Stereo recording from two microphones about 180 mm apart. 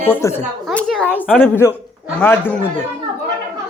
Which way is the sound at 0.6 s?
Centre (ahead or behind).